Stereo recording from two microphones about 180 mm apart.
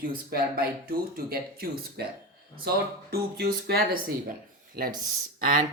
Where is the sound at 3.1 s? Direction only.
60° right (ahead or behind).